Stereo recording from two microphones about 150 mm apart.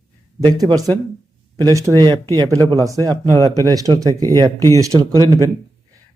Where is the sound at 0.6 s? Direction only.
25° right (ahead or behind).